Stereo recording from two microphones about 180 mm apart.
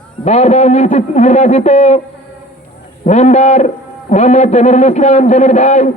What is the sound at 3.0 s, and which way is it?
A man's voice, 40° left (ahead or behind).